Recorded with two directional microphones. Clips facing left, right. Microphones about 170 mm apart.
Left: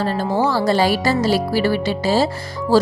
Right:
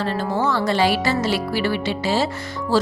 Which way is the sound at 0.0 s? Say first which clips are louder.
Left 3 dB; 35° left (ahead or behind).